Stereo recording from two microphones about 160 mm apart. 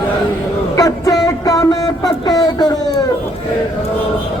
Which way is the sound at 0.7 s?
20° left (ahead or behind).